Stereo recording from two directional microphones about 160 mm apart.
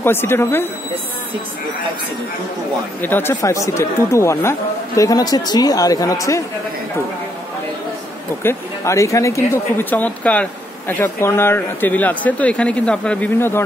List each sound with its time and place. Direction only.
0.0 s a woman's voice: 15° left (ahead or behind)
3.0 s speech: 15° left (ahead or behind)
8.4 s a woman's voice: 15° left (ahead or behind)